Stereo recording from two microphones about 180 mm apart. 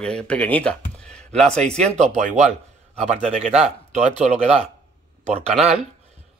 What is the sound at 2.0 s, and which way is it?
Speech, 40° right (ahead or behind).